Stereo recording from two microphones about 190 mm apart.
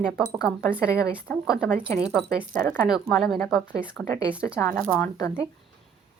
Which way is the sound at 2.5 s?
45° right (ahead or behind).